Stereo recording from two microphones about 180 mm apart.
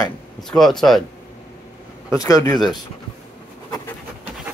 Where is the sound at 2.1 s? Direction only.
20° left (ahead or behind).